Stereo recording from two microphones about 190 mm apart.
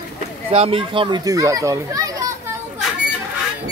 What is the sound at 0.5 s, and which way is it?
A child's voice, 30° right (ahead or behind).